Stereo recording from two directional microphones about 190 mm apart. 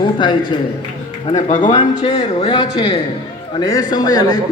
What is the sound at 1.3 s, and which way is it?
Speech, 35° left (ahead or behind).